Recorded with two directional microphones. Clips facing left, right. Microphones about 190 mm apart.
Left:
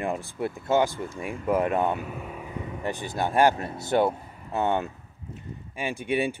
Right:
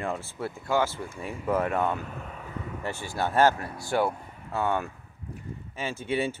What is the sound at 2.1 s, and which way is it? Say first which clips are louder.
Speech: left 3 dB; 10° left (ahead or behind).